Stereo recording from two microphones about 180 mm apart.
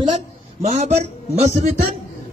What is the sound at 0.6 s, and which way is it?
A man's voice, 40° right (ahead or behind).